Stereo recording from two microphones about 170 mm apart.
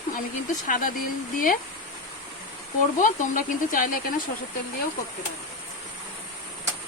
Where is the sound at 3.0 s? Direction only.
50° left (ahead or behind).